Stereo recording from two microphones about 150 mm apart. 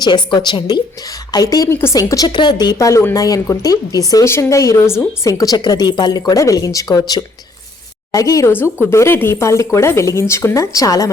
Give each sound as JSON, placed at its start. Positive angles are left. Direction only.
{"t": 0.0, "sound": "a woman's voice", "side_deg": 30}
{"t": 8.1, "sound": "speech", "side_deg": 20}